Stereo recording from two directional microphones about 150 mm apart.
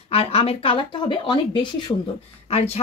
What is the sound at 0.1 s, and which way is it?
Speech, 40° left (ahead or behind).